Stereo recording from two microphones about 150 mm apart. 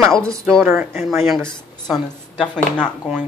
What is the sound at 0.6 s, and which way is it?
Speech, 5° right (ahead or behind).